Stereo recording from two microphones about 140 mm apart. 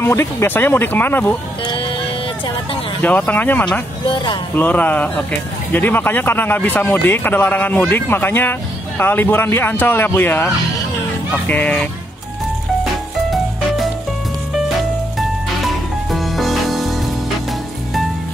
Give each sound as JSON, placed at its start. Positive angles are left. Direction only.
{"t": 0.0, "sound": "speech", "side_deg": 15}
{"t": 1.6, "sound": "music", "side_deg": 35}
{"t": 3.0, "sound": "speech", "side_deg": 10}
{"t": 4.1, "sound": "speech", "side_deg": 30}
{"t": 4.6, "sound": "speech", "side_deg": 10}
{"t": 15.1, "sound": "music", "side_deg": 0}